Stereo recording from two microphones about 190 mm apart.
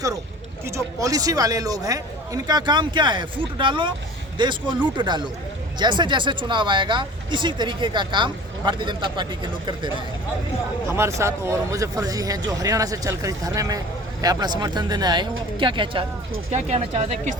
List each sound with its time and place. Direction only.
0.6 s speech: 15° right (ahead or behind)
10.8 s speech: 15° right (ahead or behind); by 17.3 s 35° right (ahead or behind)